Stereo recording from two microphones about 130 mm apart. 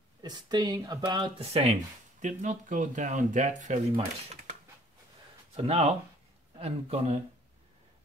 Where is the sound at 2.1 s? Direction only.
75° right (ahead or behind).